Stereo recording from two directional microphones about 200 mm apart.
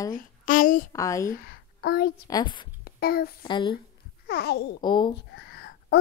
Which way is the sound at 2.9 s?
50° left (ahead or behind).